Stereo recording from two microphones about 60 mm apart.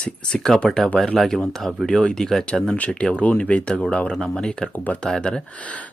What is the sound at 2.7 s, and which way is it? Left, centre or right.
Speech, left.